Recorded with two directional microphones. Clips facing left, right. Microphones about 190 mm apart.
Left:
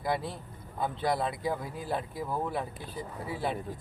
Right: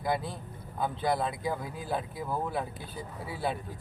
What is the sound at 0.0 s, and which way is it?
Speech, centre (ahead or behind).